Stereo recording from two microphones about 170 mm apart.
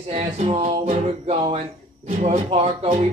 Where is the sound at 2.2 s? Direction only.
45° right (ahead or behind).